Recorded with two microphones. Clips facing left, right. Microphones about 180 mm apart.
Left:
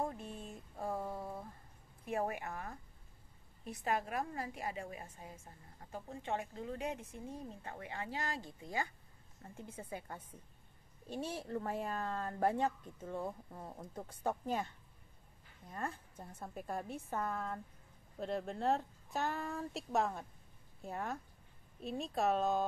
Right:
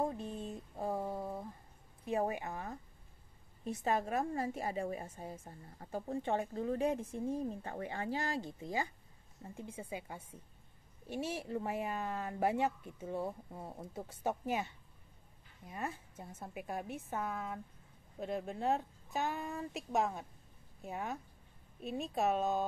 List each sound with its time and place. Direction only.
0.0 s a sound: 20° right (ahead or behind)
2.0 s a woman's voice: 20° right (ahead or behind)
9.4 s speech: 10° right (ahead or behind)
15.7 s speech: 5° right (ahead or behind)